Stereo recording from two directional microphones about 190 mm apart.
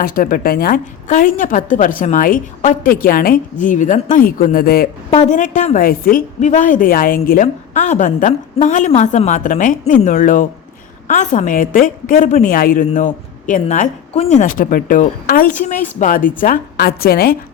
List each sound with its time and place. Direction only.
0.0 s a woman's voice: 50° left (ahead or behind)
5.1 s a woman's voice: 40° left (ahead or behind)